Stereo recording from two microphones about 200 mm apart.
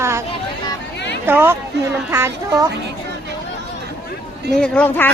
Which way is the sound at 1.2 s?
10° right (ahead or behind).